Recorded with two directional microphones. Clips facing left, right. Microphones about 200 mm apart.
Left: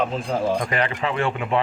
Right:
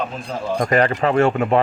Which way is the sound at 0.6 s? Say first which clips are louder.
Right 7 dB; 45° right (ahead or behind).